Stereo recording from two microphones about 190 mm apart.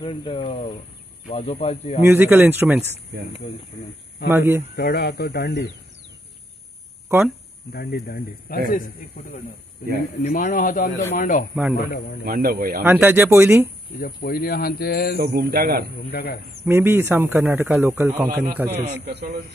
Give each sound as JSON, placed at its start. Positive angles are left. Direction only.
{"t": 0.0, "sound": "speech", "side_deg": 25}
{"t": 2.0, "sound": "speech", "side_deg": -10}
{"t": 4.3, "sound": "speech", "side_deg": -10}
{"t": 4.7, "sound": "speech", "side_deg": 60}
{"t": 7.7, "sound": "speech", "side_deg": 60}
{"t": 11.7, "sound": "speech", "side_deg": 55}
{"t": 12.3, "sound": "a man's voice", "side_deg": -50}
{"t": 12.8, "sound": "speech", "side_deg": -10}
{"t": 13.9, "sound": "speech", "side_deg": 50}
{"t": 15.1, "sound": "a man's voice", "side_deg": -55}
{"t": 16.1, "sound": "speech", "side_deg": 60}
{"t": 16.6, "sound": "speech", "side_deg": -10}